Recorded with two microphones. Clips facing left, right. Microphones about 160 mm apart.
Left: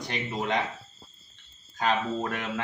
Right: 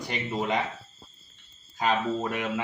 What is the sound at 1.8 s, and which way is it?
Speech, 5° right (ahead or behind).